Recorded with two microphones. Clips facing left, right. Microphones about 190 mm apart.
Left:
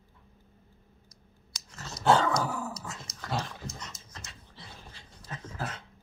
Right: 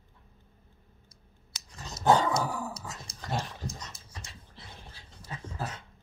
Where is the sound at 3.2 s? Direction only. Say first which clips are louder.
Even; 15° right (ahead or behind).